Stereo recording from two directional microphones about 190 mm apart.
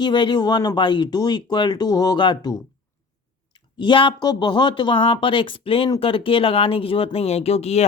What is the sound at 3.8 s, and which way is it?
Speech, 25° left (ahead or behind).